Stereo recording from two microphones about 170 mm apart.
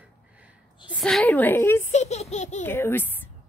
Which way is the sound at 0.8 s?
Centre (ahead or behind).